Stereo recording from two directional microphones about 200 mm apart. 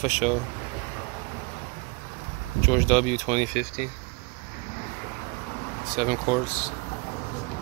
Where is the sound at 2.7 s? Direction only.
Centre (ahead or behind).